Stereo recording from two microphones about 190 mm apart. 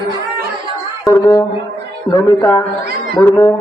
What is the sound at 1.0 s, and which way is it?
A man's voice, 15° left (ahead or behind).